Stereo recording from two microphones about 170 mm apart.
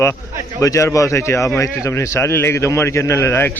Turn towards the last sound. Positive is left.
turn(degrees=10)  # may be behind; listen again after turning